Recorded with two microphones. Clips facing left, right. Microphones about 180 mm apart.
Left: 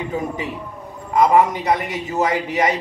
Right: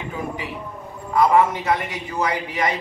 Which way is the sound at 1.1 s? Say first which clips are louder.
Left 2 dB; 20° left (ahead or behind).